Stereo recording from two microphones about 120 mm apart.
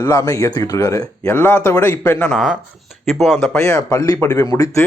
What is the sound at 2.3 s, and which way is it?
Speech, centre (ahead or behind).